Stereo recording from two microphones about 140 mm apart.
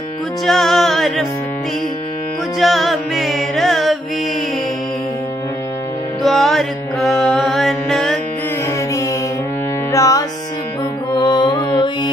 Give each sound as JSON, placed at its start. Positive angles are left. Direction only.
{"t": 0.5, "sound": "music", "side_deg": 0}
{"t": 2.6, "sound": "music", "side_deg": 0}
{"t": 6.2, "sound": "music", "side_deg": 0}
{"t": 9.9, "sound": "music", "side_deg": 25}
{"t": 11.1, "sound": "mantra", "side_deg": 30}